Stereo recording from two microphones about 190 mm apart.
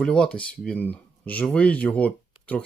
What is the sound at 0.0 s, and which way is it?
Speech, 5° left (ahead or behind).